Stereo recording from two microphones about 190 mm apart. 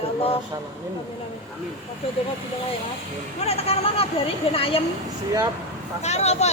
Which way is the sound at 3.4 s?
30° left (ahead or behind).